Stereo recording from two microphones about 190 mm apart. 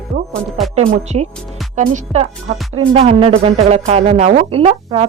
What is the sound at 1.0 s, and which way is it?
A woman's voice, 35° right (ahead or behind).